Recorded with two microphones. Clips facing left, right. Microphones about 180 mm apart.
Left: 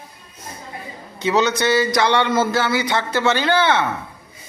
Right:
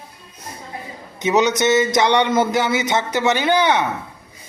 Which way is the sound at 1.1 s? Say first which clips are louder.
Right 1 dB; 20° right (ahead or behind).